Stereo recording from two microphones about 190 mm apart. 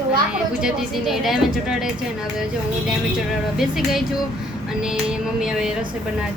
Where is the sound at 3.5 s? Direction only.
Centre (ahead or behind).